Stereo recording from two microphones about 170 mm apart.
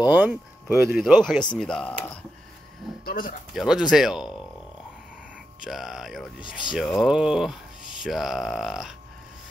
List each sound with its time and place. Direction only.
0.1 s speech: 10° right (ahead or behind); by 2.1 s 5° left (ahead or behind)
3.1 s speech: 55° left (ahead or behind)
3.5 s speech: 5° right (ahead or behind)
5.6 s speech: centre (ahead or behind)